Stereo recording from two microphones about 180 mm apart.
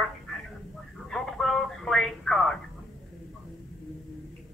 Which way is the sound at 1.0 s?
Centre (ahead or behind).